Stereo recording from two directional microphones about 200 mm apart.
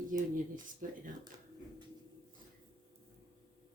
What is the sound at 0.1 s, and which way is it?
Speech, 40° right (ahead or behind).